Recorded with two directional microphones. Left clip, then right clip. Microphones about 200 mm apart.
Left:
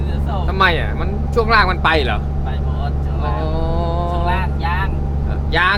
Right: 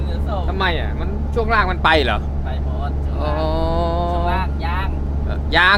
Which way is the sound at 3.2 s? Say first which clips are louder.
Right 3 dB; 20° right (ahead or behind).